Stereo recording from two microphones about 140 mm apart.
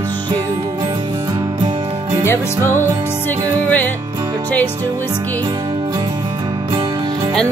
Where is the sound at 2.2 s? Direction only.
20° left (ahead or behind).